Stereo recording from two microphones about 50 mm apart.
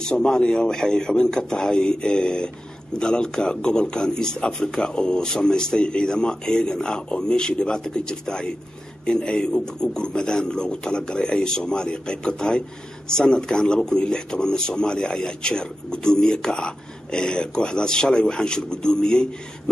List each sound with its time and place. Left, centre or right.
0.0 s speech: centre